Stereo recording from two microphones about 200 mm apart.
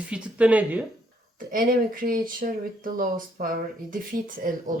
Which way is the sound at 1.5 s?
45° right (ahead or behind).